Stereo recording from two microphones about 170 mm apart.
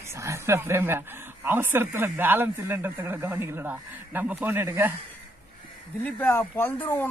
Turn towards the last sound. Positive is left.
turn(degrees=10)  # may be behind; listen again after turning